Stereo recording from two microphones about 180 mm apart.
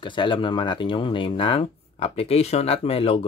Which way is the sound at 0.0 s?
25° left (ahead or behind).